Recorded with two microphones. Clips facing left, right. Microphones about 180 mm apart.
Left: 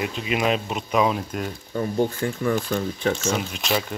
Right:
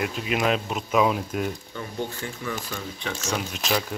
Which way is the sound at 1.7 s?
45° left (ahead or behind).